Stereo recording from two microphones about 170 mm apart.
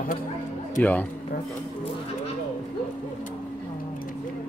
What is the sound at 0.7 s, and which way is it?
Speech, 10° left (ahead or behind).